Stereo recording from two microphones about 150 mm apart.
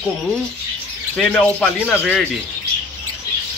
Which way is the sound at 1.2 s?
5° left (ahead or behind).